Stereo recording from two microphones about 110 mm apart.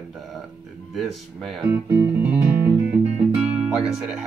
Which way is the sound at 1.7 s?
20° right (ahead or behind).